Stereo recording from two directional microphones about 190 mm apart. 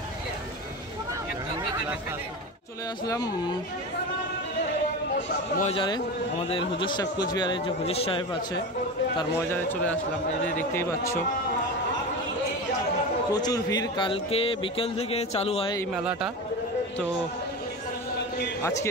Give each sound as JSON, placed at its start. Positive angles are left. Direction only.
{"t": 3.1, "sound": "a man's voice", "side_deg": 20}
{"t": 5.6, "sound": "a man's voice", "side_deg": 30}
{"t": 9.5, "sound": "speech", "side_deg": 10}
{"t": 13.3, "sound": "a man's voice", "side_deg": 20}
{"t": 15.9, "sound": "a man's voice", "side_deg": -5}
{"t": 18.6, "sound": "speech", "side_deg": 15}